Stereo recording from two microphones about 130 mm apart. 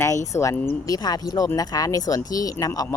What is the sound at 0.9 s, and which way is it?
Speech, 30° left (ahead or behind).